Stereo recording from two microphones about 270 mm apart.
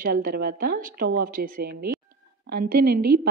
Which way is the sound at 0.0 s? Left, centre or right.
Right.